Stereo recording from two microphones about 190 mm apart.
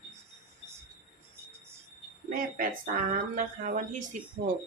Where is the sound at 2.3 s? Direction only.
45° right (ahead or behind).